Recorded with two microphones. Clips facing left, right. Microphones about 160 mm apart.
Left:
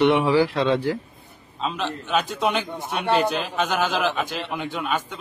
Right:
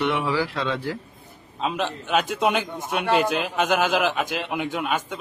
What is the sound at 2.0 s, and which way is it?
A man's voice, 5° right (ahead or behind).